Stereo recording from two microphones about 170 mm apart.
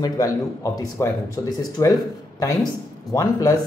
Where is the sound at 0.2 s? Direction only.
20° left (ahead or behind).